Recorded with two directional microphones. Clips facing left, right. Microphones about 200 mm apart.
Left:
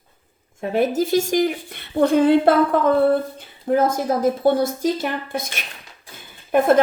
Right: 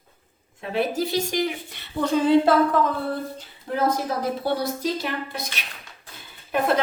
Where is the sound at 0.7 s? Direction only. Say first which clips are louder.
Left 5 dB; 45° left (ahead or behind).